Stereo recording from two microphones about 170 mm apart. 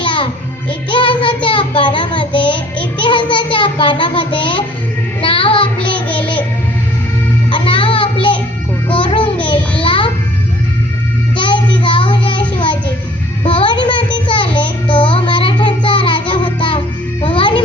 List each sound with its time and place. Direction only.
0.0 s music: 30° left (ahead or behind)
0.9 s child singing: 30° left (ahead or behind)
6.1 s music: 30° left (ahead or behind)
7.5 s child singing: 30° left (ahead or behind)
8.9 s music: 30° left (ahead or behind)
9.8 s babbling: 30° left (ahead or behind)
11.3 s child singing: 30° left (ahead or behind)
16.3 s music: 30° left (ahead or behind)